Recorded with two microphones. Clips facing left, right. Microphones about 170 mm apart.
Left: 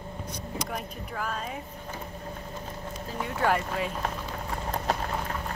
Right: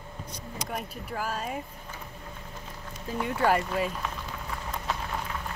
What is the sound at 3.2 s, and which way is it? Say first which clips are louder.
Speech: right 2 dB; 5° right (ahead or behind).